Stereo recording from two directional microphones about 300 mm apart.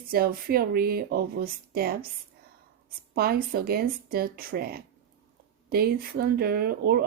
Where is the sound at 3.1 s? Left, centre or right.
Right.